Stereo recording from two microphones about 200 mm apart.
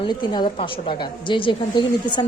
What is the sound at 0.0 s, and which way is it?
A woman's voice, 20° left (ahead or behind).